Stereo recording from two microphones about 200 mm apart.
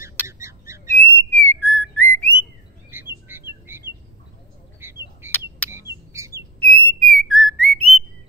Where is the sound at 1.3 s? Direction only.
10° left (ahead or behind).